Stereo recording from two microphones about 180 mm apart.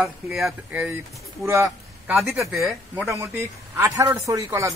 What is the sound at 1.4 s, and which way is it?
A man's voice, 15° right (ahead or behind).